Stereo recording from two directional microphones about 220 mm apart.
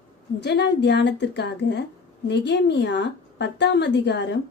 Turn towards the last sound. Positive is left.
turn(degrees=50)  # may be behind; listen again after turning